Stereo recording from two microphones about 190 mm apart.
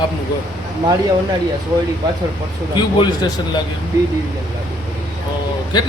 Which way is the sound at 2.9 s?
20° left (ahead or behind).